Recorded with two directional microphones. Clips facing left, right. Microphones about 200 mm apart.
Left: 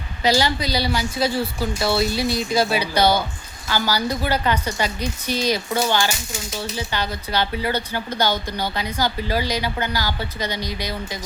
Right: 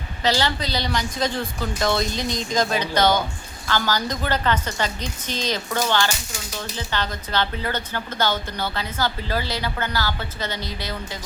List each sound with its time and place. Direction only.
0.2 s speech: 10° left (ahead or behind)